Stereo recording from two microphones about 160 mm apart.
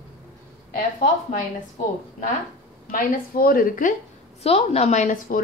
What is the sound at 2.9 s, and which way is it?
A woman's voice, 65° left (ahead or behind).